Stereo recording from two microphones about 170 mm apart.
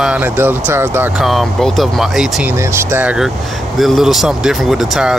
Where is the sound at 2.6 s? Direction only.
15° right (ahead or behind).